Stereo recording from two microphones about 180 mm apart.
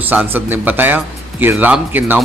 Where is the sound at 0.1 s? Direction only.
10° right (ahead or behind).